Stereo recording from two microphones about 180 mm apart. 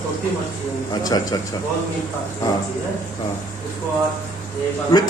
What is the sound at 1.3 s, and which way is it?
Speech, 20° left (ahead or behind).